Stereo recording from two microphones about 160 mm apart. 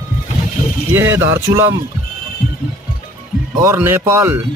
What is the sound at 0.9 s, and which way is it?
Speech, 15° right (ahead or behind).